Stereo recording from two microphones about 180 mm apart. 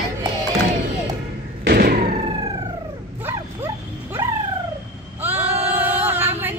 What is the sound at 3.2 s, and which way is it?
Bow-wow, 10° right (ahead or behind).